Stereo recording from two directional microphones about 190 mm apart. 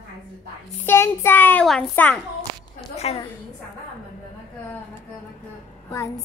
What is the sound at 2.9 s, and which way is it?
Speech, 35° left (ahead or behind).